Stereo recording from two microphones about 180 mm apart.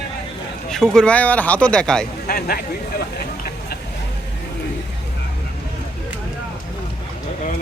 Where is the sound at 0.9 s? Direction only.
5° left (ahead or behind).